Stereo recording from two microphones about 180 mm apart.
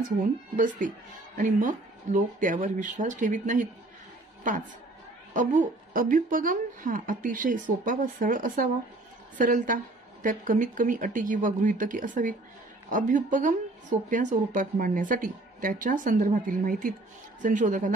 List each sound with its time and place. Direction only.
0.2 s speech: 45° right (ahead or behind)
5.3 s speech: 45° right (ahead or behind)